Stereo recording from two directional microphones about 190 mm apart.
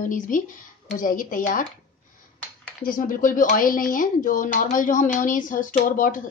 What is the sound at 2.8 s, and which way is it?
Speech, 45° left (ahead or behind).